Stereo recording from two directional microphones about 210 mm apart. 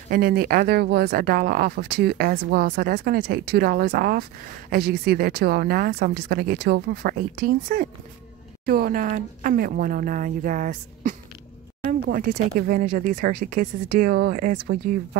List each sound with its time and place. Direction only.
0.1 s speech: 45° right (ahead or behind)